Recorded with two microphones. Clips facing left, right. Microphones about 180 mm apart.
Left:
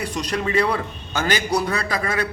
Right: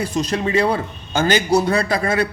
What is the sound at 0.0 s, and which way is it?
A man's voice, 25° right (ahead or behind).